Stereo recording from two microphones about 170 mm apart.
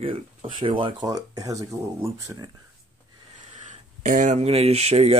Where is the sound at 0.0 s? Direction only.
30° right (ahead or behind).